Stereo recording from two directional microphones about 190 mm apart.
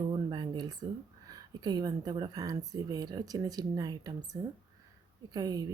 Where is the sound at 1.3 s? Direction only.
20° right (ahead or behind).